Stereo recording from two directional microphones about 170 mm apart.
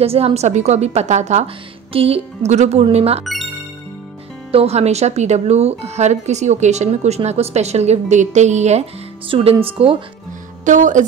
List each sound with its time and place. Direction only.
0.0 s speech: 35° right (ahead or behind)
4.5 s speech: 35° right (ahead or behind)
10.6 s speech: 50° right (ahead or behind)